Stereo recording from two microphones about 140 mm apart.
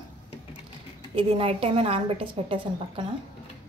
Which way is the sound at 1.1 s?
40° right (ahead or behind).